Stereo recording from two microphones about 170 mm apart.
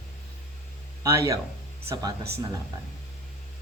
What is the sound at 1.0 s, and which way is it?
Speech, 20° right (ahead or behind).